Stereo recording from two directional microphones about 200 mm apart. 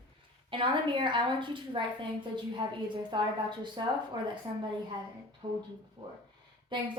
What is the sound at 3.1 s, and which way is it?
Speech, 20° right (ahead or behind).